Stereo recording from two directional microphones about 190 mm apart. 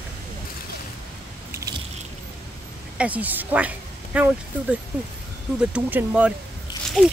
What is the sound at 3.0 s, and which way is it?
Speech, 10° right (ahead or behind).